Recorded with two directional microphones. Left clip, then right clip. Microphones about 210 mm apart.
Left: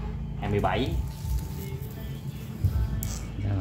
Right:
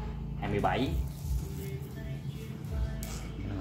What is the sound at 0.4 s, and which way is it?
Speech, 20° left (ahead or behind).